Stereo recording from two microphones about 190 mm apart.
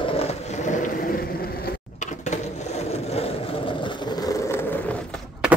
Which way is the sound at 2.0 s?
40° left (ahead or behind).